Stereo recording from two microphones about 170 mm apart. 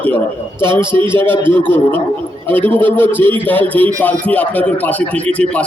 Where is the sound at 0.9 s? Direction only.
15° left (ahead or behind).